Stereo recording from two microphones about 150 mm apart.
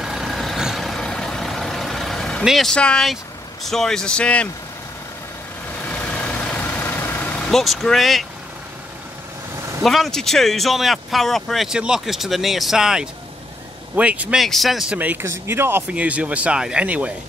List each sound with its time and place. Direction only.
0.0 s vehicle: centre (ahead or behind)
3.6 s speech: 5° left (ahead or behind)
5.9 s vehicle: 10° left (ahead or behind)
9.8 s speech: centre (ahead or behind)